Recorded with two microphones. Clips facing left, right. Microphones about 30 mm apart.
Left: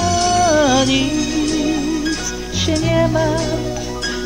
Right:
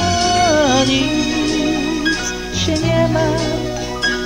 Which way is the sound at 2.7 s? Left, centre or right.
Centre.